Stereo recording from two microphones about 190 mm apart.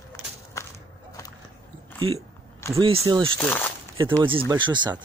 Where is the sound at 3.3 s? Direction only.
10° left (ahead or behind).